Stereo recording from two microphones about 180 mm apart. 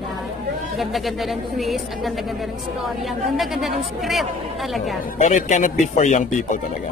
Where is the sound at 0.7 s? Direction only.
Centre (ahead or behind).